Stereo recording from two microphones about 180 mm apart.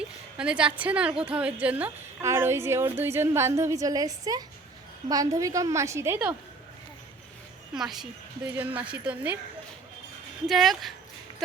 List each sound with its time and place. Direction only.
0.3 s a woman's voice: 5° right (ahead or behind)
7.7 s a woman's voice: 5° right (ahead or behind)
10.5 s speech: centre (ahead or behind)